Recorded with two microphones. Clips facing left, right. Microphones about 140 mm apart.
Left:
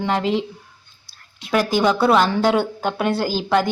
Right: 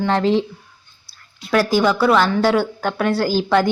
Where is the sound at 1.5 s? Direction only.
15° left (ahead or behind).